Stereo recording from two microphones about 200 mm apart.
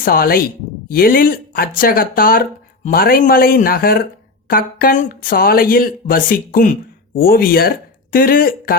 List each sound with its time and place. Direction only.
0.0 s speech: 45° left (ahead or behind)